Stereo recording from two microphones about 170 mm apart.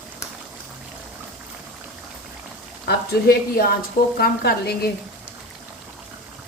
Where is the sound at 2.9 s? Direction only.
65° left (ahead or behind).